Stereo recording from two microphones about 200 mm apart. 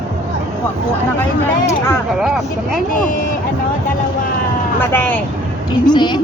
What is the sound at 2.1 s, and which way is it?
Speech, centre (ahead or behind).